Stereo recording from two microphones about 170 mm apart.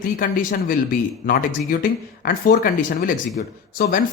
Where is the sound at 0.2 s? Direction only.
55° left (ahead or behind).